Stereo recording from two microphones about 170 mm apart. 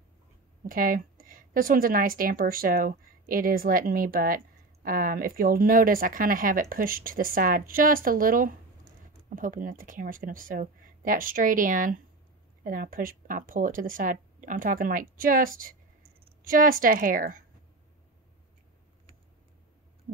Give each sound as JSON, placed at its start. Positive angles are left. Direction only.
{"t": 0.7, "sound": "a woman's voice", "side_deg": -55}